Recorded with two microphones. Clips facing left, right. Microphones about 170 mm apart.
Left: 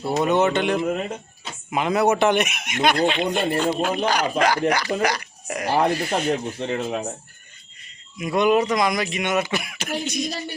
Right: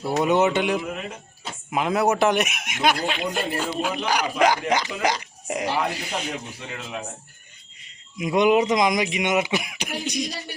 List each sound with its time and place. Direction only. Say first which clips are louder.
0.2 s speech: even; 10° right (ahead or behind)
5.8 s speech: left 7 dB; 50° left (ahead or behind)
8.2 s speech: even; 15° right (ahead or behind)